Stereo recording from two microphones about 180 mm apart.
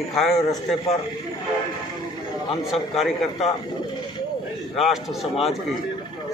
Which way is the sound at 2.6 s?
Centre (ahead or behind).